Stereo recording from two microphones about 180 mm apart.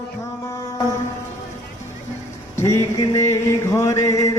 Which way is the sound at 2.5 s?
15° left (ahead or behind).